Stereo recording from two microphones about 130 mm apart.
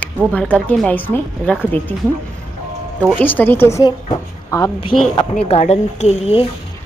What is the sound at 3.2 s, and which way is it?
Speech, 15° left (ahead or behind).